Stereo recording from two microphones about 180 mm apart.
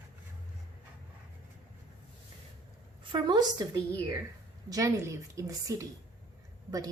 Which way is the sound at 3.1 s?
25° right (ahead or behind).